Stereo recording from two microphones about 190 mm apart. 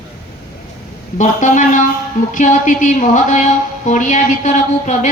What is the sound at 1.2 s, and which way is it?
A woman's voice, 40° left (ahead or behind).